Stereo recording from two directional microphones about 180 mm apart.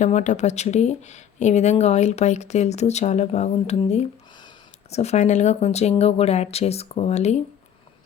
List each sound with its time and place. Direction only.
0.0 s speech: 40° left (ahead or behind)